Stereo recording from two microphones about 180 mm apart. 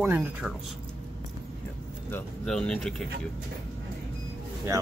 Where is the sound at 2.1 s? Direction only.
5° left (ahead or behind).